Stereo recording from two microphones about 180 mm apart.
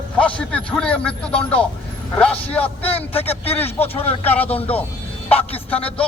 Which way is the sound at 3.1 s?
35° left (ahead or behind).